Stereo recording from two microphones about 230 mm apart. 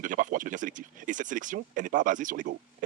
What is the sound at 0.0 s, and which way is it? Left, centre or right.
Speech, right.